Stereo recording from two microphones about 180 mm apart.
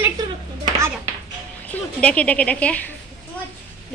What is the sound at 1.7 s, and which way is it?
A woman's voice, 5° left (ahead or behind).